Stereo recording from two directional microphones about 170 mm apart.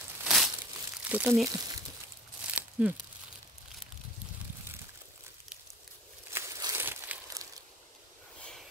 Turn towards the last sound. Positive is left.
turn(degrees=-15)  # may be behind; listen again after turning